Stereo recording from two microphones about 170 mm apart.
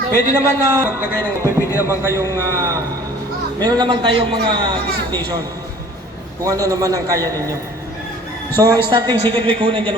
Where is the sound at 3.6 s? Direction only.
25° right (ahead or behind).